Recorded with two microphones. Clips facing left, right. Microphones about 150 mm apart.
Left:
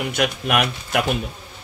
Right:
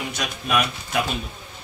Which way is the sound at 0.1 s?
65° left (ahead or behind).